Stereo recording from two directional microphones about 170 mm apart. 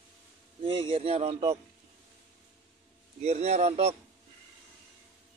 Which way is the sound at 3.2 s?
40° right (ahead or behind).